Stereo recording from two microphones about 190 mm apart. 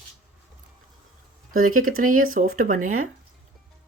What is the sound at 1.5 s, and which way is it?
Speech, 45° right (ahead or behind).